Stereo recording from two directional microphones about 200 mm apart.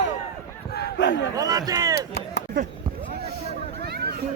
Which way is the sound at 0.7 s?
55° left (ahead or behind).